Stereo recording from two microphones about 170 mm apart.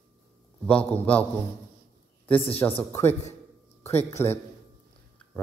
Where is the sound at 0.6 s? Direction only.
10° left (ahead or behind).